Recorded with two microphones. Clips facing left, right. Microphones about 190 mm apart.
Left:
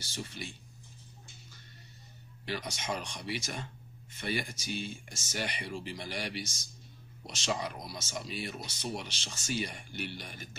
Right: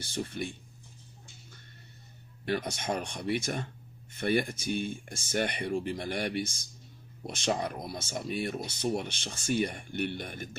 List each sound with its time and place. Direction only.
0.0 s speech: 55° right (ahead or behind)
2.4 s speech: 55° right (ahead or behind)